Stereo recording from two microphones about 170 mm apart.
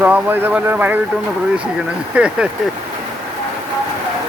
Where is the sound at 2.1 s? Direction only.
5° right (ahead or behind).